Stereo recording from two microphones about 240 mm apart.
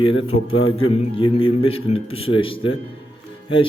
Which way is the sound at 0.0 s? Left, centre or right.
Left.